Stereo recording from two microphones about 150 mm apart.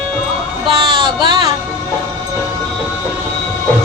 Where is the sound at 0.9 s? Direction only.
30° right (ahead or behind).